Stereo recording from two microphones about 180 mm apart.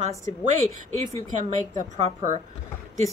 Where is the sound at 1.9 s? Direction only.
40° right (ahead or behind).